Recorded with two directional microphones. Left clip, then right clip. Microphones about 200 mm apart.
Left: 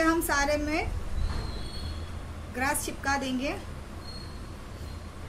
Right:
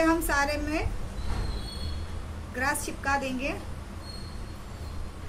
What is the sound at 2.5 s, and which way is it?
A woman's voice, 10° left (ahead or behind).